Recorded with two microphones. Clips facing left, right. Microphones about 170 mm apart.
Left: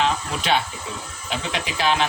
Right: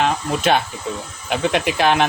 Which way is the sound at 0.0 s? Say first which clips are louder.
Right 4 dB; 55° right (ahead or behind).